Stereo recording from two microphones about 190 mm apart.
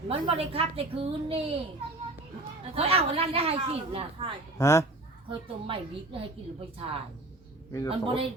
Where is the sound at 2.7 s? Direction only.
30° right (ahead or behind).